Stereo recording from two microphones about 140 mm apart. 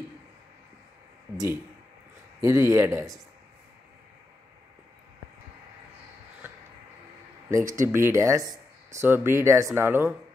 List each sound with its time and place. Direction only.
1.3 s speech: 25° right (ahead or behind)
7.4 s speech: 20° right (ahead or behind)